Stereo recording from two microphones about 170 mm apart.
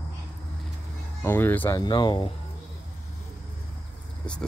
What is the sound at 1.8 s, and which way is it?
Speech, 25° left (ahead or behind).